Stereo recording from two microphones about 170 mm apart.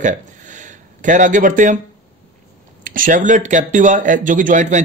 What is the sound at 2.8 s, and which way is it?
Speech, 50° right (ahead or behind).